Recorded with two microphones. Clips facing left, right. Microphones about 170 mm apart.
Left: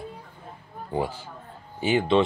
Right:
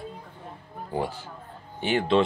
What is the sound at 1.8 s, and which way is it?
Speech, centre (ahead or behind).